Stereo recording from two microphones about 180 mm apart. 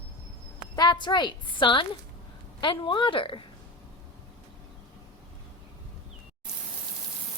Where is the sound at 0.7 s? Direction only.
25° left (ahead or behind).